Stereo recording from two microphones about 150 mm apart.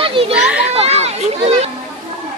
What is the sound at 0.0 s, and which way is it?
Children playing, 40° right (ahead or behind).